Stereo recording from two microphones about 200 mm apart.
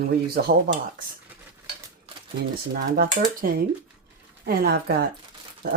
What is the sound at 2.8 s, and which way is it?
Speech, 50° right (ahead or behind).